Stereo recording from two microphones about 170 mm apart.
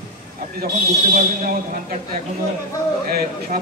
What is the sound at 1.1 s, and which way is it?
Speech, 50° right (ahead or behind).